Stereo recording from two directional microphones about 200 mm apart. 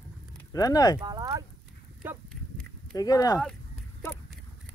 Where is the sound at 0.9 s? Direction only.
20° right (ahead or behind).